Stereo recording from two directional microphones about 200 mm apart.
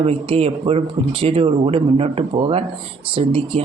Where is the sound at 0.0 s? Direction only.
30° right (ahead or behind).